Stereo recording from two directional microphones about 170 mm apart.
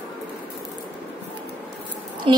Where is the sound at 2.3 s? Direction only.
30° right (ahead or behind).